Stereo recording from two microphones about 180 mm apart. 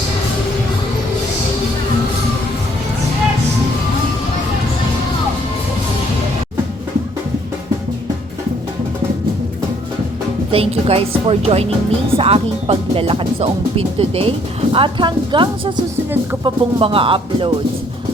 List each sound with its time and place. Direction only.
10.5 s a woman's voice: 35° right (ahead or behind)